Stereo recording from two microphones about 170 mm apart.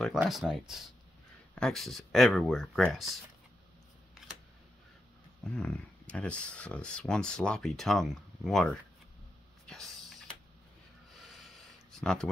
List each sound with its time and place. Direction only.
0.0 s speech: centre (ahead or behind)
5.5 s speech: 5° left (ahead or behind)
9.7 s a sound: centre (ahead or behind)